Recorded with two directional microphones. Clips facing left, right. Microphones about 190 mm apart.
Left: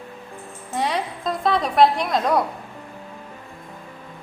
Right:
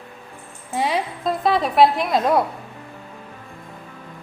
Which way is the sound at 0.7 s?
5° right (ahead or behind).